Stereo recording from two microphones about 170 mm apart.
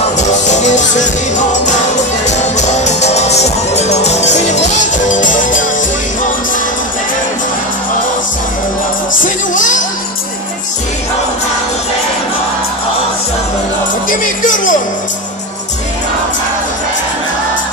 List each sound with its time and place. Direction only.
0.3 s music: 45° left (ahead or behind)
9.1 s music: 50° left (ahead or behind)
14.0 s music: 50° left (ahead or behind)